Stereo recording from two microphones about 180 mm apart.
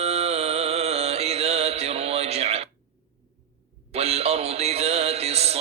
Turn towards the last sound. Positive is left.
turn(degrees=-35)  # may be behind; listen again after turning